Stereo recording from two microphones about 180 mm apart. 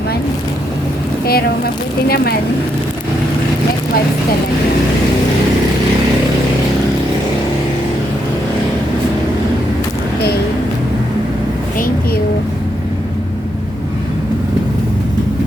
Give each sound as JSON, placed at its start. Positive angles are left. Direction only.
{"t": 1.2, "sound": "speech", "side_deg": 60}